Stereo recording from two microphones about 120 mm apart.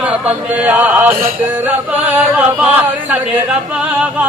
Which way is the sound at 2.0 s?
15° right (ahead or behind).